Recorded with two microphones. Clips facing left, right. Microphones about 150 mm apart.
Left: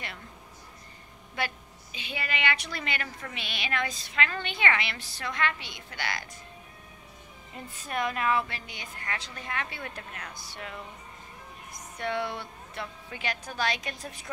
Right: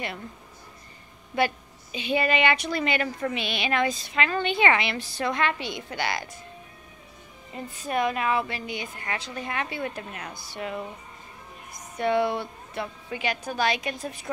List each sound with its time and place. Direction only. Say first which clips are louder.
1.3 s a woman's voice: right 9 dB; 15° right (ahead or behind)
7.5 s a woman's voice: right 6 dB; 10° right (ahead or behind)
12.0 s a woman's voice: right 8 dB; 10° right (ahead or behind)